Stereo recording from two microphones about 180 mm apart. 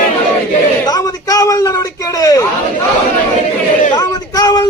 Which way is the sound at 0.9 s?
20° left (ahead or behind).